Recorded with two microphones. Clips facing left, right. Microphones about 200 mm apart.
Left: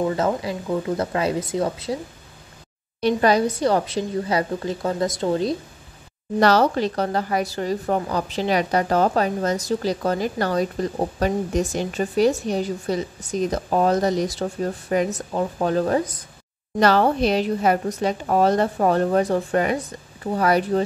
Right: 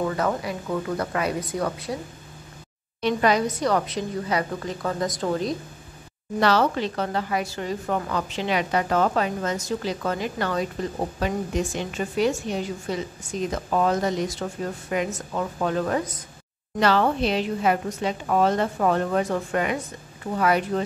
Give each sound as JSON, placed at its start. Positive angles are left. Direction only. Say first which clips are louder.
{"t": 0.0, "sound": "speech", "louder": "left 3 dB", "side_deg": 25}
{"t": 3.0, "sound": "a woman's voice", "louder": "left 3 dB", "side_deg": 35}
{"t": 6.4, "sound": "a woman's voice", "louder": "left 3 dB", "side_deg": 40}